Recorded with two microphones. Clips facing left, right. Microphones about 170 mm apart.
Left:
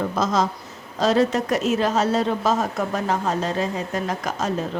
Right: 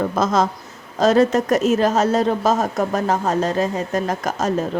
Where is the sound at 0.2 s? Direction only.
55° right (ahead or behind).